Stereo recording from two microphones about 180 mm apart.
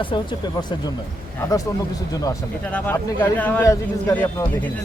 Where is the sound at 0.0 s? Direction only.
30° left (ahead or behind).